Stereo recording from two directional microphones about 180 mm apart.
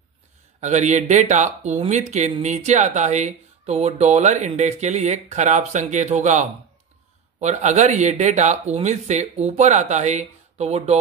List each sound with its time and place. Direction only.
0.6 s speech: 40° right (ahead or behind)